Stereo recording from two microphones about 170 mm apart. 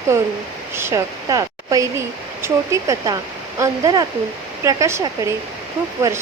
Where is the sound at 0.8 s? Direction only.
15° right (ahead or behind).